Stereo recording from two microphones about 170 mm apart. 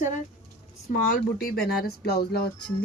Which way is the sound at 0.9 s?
55° left (ahead or behind).